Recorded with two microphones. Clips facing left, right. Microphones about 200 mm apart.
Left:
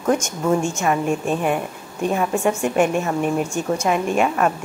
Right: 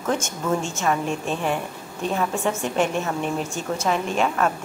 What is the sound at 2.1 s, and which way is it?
A woman's voice, 15° left (ahead or behind).